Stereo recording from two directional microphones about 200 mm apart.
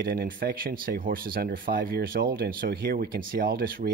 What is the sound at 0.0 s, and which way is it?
Speech, 50° right (ahead or behind).